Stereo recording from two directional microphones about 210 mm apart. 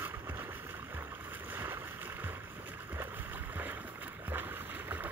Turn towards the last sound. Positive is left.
turn(degrees=-10)  # may be behind; listen again after turning